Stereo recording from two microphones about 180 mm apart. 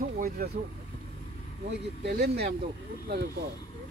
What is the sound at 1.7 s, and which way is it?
Speech, 70° right (ahead or behind).